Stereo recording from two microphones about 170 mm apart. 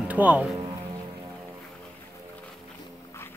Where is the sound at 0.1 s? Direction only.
10° right (ahead or behind).